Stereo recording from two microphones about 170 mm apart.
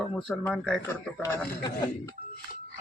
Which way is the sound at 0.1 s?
5° left (ahead or behind).